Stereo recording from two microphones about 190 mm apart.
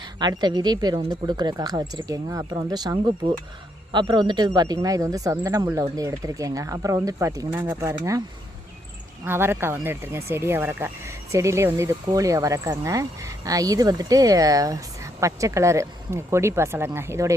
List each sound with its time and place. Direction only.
0.0 s speech: 20° right (ahead or behind)
9.2 s speech: 10° right (ahead or behind)